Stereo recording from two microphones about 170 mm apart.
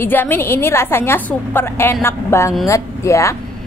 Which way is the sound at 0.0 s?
10° left (ahead or behind).